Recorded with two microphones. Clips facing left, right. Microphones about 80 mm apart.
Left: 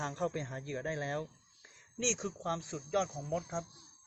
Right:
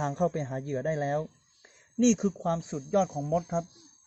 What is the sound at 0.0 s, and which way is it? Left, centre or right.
Speech, right.